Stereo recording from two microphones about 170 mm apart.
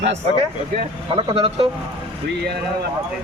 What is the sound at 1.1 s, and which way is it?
Speech, 35° right (ahead or behind).